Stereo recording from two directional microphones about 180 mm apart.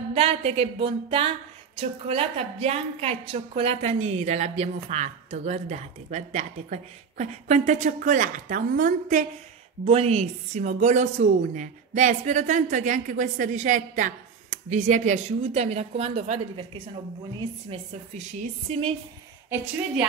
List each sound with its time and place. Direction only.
0.1 s a woman's voice: 30° right (ahead or behind)
9.8 s a woman's voice: 35° right (ahead or behind)
19.5 s a woman's voice: 10° right (ahead or behind)